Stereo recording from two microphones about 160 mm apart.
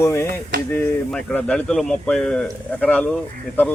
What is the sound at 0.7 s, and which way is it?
A man's voice, 10° left (ahead or behind).